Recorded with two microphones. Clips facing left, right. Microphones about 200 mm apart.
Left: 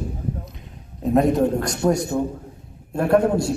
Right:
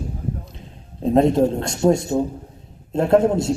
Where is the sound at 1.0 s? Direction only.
25° right (ahead or behind).